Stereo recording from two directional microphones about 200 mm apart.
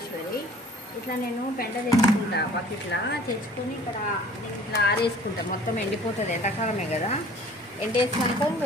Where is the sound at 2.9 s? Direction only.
60° left (ahead or behind).